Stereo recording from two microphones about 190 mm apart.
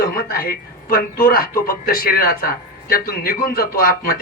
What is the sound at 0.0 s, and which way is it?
Speech, 50° left (ahead or behind).